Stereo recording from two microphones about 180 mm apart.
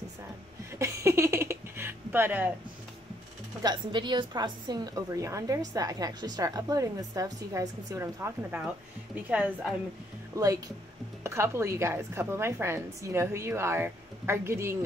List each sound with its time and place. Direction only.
0.7 s a sound: 15° right (ahead or behind)
3.6 s a woman's voice: 25° right (ahead or behind); by 9.8 s 5° right (ahead or behind)
10.3 s a woman's voice: 20° right (ahead or behind)